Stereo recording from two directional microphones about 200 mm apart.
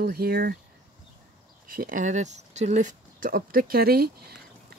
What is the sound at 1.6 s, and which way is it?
Speech, 45° right (ahead or behind).